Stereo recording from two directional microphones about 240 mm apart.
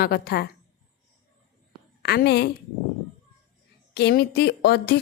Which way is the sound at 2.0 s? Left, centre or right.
Left.